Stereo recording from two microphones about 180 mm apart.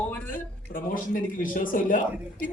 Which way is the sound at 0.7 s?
50° left (ahead or behind).